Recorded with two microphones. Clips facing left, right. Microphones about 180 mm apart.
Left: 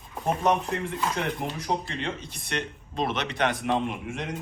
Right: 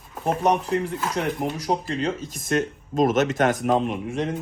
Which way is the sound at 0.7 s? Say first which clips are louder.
Right 4 dB; 35° right (ahead or behind).